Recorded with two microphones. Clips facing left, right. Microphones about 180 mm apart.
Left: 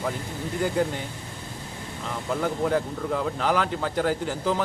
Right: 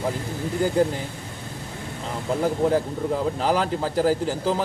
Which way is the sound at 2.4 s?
30° right (ahead or behind).